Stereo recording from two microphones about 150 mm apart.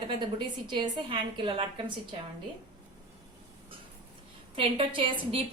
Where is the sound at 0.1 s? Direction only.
30° right (ahead or behind).